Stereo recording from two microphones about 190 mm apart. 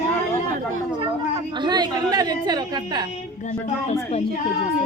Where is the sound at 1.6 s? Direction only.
20° right (ahead or behind).